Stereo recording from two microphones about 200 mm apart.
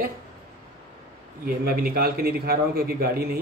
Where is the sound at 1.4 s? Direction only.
45° right (ahead or behind).